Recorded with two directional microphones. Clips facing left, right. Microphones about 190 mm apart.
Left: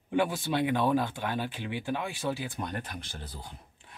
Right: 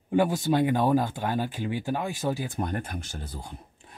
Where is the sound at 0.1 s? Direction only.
40° right (ahead or behind).